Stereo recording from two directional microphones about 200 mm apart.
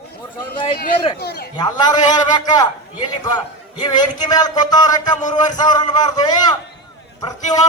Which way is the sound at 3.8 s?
20° left (ahead or behind).